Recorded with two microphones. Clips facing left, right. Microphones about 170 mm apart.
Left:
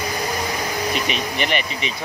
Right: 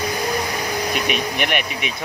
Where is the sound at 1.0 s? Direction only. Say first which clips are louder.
Right 2 dB; 55° right (ahead or behind).